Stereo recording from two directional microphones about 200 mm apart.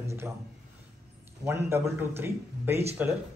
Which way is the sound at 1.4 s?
15° right (ahead or behind).